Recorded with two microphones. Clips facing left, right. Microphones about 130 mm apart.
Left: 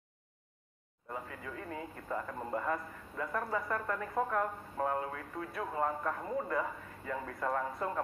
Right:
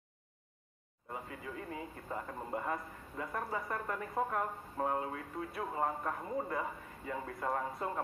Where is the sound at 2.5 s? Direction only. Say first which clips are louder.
Left 2 dB; 25° right (ahead or behind).